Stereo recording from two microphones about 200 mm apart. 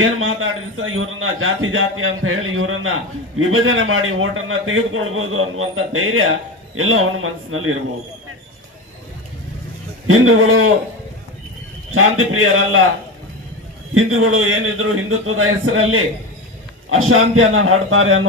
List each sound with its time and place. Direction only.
0.0 s a man's voice: 90° right
10.0 s a man's voice: 85° right
11.9 s a man's voice: 90° right
13.9 s a man's voice: 90° right